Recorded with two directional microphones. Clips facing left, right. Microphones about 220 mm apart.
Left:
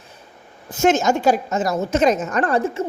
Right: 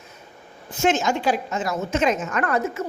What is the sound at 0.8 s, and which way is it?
A woman's voice, 45° left (ahead or behind).